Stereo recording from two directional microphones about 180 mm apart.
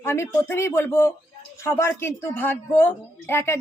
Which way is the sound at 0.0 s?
10° left (ahead or behind).